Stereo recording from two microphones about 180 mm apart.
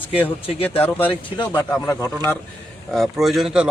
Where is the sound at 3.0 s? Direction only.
Centre (ahead or behind).